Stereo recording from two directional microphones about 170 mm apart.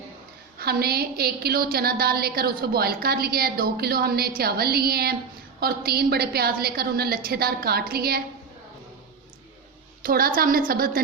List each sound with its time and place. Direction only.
0.6 s a woman's voice: 65° right (ahead or behind)
10.0 s a woman's voice: 60° right (ahead or behind)